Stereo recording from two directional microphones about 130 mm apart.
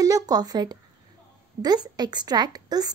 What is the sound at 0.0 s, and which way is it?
A woman's voice, 30° right (ahead or behind).